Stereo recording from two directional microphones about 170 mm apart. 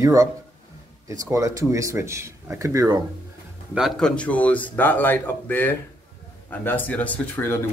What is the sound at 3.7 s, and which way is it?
Speech, centre (ahead or behind).